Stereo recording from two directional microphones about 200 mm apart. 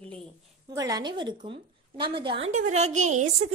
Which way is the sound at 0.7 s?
20° right (ahead or behind).